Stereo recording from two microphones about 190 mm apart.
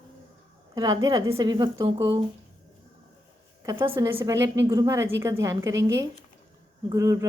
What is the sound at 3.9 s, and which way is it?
A woman's voice, 10° right (ahead or behind).